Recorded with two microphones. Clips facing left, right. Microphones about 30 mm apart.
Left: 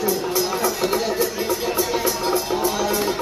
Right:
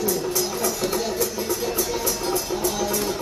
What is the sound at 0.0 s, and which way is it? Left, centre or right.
Music, centre.